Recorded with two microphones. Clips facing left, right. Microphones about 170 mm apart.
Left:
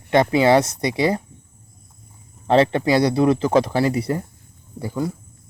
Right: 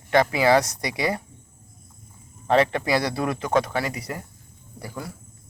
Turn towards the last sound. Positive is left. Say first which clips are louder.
# left 10 dB
turn(degrees=20)  # may be behind; listen again after turning